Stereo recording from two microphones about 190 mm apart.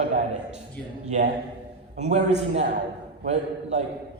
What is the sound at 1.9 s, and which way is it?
A man's voice, 35° right (ahead or behind).